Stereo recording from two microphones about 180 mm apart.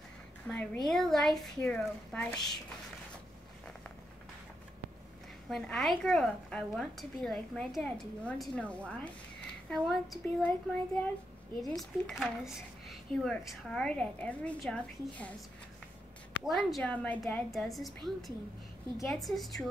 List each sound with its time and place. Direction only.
0.5 s speech: 5° left (ahead or behind)
5.5 s speech: centre (ahead or behind)
16.4 s speech: centre (ahead or behind)